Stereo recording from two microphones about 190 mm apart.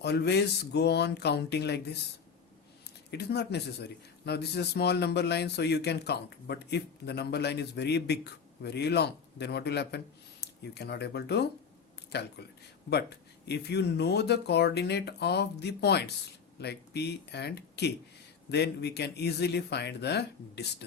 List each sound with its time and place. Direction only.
0.0 s a man's voice: 60° left (ahead or behind)
3.1 s a man's voice: 60° left (ahead or behind)